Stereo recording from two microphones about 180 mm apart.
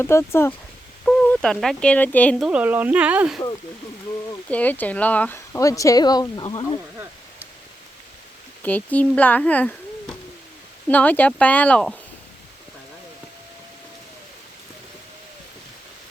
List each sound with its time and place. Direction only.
0.0 s speech: 15° left (ahead or behind)
2.5 s speech: 10° right (ahead or behind)
4.4 s speech: 10° left (ahead or behind)
8.6 s speech: 10° left (ahead or behind)